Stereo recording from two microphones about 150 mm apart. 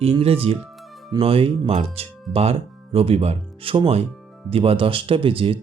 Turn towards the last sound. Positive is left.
turn(degrees=-35)  # may be behind; listen again after turning